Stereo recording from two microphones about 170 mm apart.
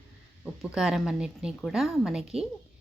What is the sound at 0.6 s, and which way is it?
Speech, 5° right (ahead or behind).